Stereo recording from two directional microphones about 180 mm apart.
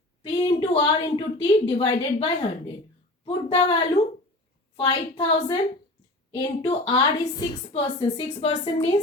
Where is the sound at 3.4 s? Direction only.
30° left (ahead or behind).